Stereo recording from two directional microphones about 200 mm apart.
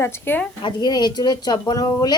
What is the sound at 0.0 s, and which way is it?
Speech, 10° left (ahead or behind).